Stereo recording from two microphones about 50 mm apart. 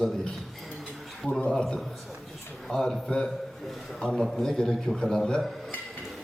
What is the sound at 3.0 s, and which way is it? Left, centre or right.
A man's voice, centre.